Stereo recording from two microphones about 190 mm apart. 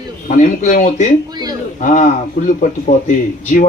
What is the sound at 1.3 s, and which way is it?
Speech, 20° right (ahead or behind).